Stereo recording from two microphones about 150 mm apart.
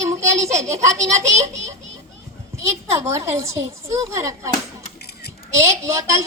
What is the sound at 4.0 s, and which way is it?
Speech, 20° right (ahead or behind).